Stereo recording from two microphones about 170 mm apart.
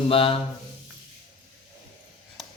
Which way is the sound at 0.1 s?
30° left (ahead or behind).